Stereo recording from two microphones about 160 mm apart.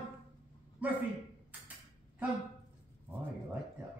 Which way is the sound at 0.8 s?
10° right (ahead or behind).